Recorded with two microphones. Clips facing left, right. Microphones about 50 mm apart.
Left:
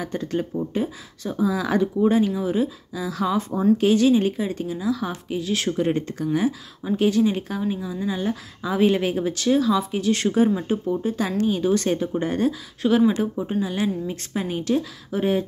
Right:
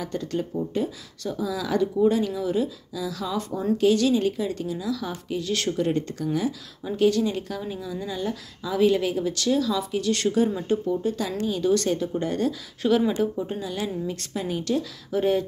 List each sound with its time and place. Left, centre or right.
0.0 s speech: left
5.1 s speech: centre
5.7 s speech: left
11.2 s speech: left
11.6 s speech: left
12.8 s speech: centre